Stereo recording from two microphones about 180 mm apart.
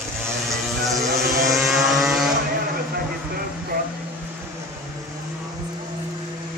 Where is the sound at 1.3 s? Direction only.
15° right (ahead or behind).